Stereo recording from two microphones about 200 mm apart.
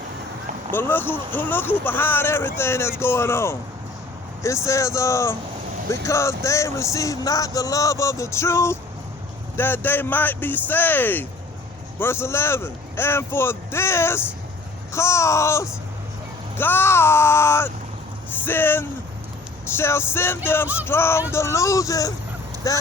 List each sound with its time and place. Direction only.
0.7 s music: 10° left (ahead or behind)